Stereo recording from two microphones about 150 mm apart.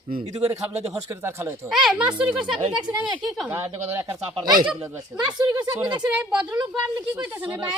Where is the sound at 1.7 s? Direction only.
Centre (ahead or behind).